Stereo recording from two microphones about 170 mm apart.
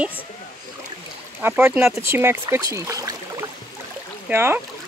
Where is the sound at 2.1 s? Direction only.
15° right (ahead or behind).